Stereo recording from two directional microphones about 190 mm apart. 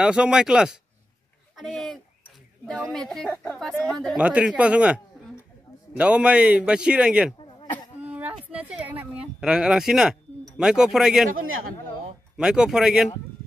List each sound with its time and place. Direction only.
0.0 s a man's voice: 5° right (ahead or behind)
11.3 s a man's voice: 90° right
12.4 s a man's voice: 5° right (ahead or behind)